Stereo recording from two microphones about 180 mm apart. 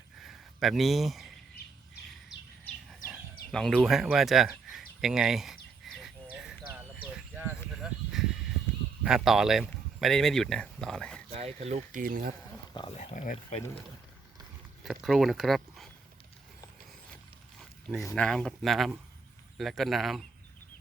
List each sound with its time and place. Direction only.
0.2 s a sound: centre (ahead or behind)
3.5 s speech: 5° left (ahead or behind)
6.3 s a sound: 5° right (ahead or behind)
9.0 s speech: centre (ahead or behind)
11.3 s speech: 35° right (ahead or behind)
13.0 s speech: 45° left (ahead or behind)
15.0 s speech: centre (ahead or behind)
18.1 s speech: 5° left (ahead or behind)